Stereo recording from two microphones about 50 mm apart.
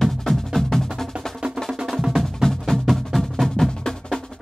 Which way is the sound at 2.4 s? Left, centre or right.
Centre.